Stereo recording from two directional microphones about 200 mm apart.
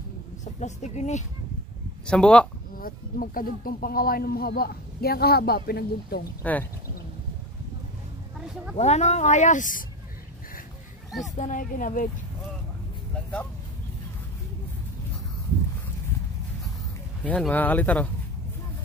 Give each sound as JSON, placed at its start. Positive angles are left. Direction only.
{"t": 0.6, "sound": "speech", "side_deg": 35}
{"t": 2.0, "sound": "speech", "side_deg": 5}
{"t": 2.8, "sound": "speech", "side_deg": 45}
{"t": 6.4, "sound": "speech", "side_deg": 10}
{"t": 8.7, "sound": "speech", "side_deg": 35}
{"t": 11.1, "sound": "speech", "side_deg": 0}
{"t": 11.3, "sound": "speech", "side_deg": 40}
{"t": 13.1, "sound": "a sound", "side_deg": 5}
{"t": 17.2, "sound": "speech", "side_deg": 5}